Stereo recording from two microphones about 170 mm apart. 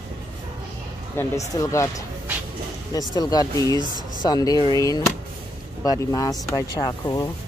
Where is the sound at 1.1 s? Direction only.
20° left (ahead or behind).